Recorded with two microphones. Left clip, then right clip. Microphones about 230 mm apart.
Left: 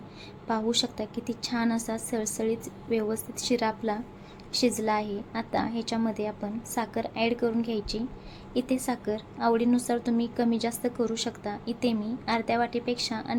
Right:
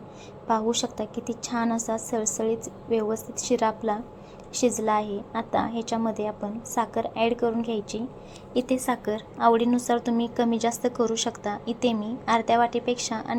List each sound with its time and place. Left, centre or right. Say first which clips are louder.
0.4 s a woman's voice: right 3 dB; centre
8.9 s a woman's voice: right 4 dB; centre